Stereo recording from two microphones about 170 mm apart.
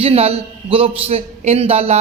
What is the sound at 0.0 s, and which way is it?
A man's voice, 35° right (ahead or behind).